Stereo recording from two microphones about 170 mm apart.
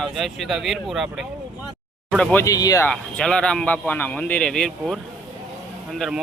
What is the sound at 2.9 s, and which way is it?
Speech, 5° left (ahead or behind).